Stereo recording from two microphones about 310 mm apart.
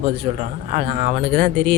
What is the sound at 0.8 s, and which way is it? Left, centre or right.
Speech, right.